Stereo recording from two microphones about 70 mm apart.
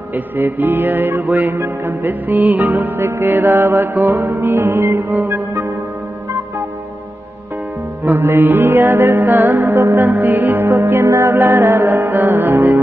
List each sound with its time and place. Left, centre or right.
0.1 s music: right
8.0 s music: right
10.0 s music: right
10.9 s music: right
11.3 s music: right